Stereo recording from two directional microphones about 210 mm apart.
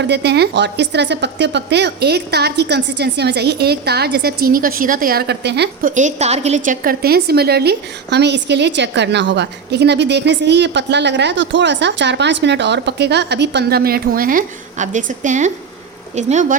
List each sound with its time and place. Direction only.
0.0 s a woman's voice: 55° right (ahead or behind)
5.9 s a woman's voice: 35° right (ahead or behind)